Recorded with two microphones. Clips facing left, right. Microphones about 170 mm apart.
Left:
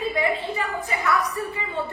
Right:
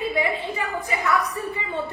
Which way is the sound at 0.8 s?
20° right (ahead or behind).